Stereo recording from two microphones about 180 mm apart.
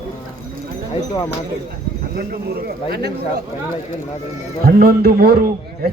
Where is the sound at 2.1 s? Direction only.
55° right (ahead or behind).